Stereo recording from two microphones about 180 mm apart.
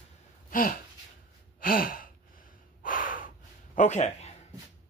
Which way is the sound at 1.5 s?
50° left (ahead or behind).